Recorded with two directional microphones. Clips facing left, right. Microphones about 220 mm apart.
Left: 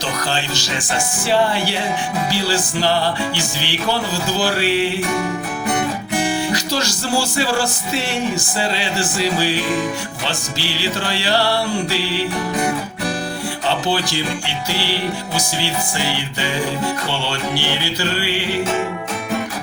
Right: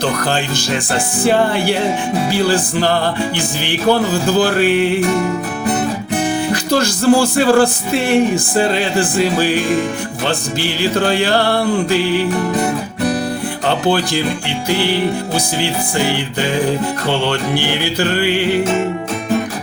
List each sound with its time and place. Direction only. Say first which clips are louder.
0.0 s music: right 6 dB; 55° right (ahead or behind)
6.5 s music: right 6 dB; 55° right (ahead or behind)
13.7 s music: right 5 dB; 55° right (ahead or behind)